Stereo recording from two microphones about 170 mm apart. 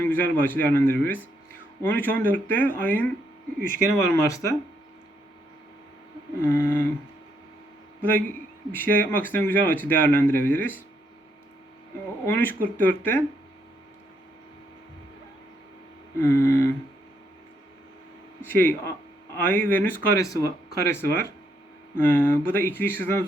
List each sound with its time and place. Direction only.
0.0 s a man's voice: 10° left (ahead or behind)
6.4 s a man's voice: 15° left (ahead or behind)
8.0 s a man's voice: 10° left (ahead or behind)
12.2 s a man's voice: 10° left (ahead or behind)
16.2 s a man's voice: 10° left (ahead or behind)
18.4 s a man's voice: 10° left (ahead or behind)